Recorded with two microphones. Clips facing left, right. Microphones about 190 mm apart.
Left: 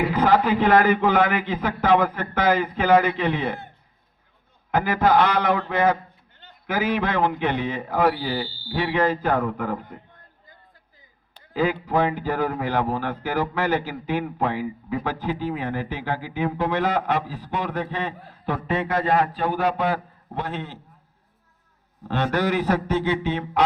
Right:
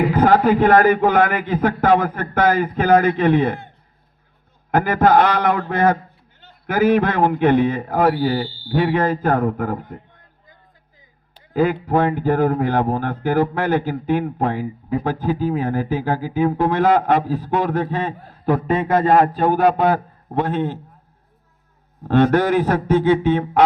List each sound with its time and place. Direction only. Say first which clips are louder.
0.1 s a man's voice: right 5 dB; 50° right (ahead or behind)
4.7 s a man's voice: right 4 dB; 50° right (ahead or behind)
11.5 s a man's voice: right 4 dB; 50° right (ahead or behind)
22.0 s a man's voice: right 8 dB; 50° right (ahead or behind)